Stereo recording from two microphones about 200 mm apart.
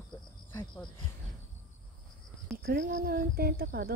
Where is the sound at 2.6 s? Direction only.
45° right (ahead or behind).